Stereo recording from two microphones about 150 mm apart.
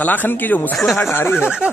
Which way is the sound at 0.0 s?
10° left (ahead or behind).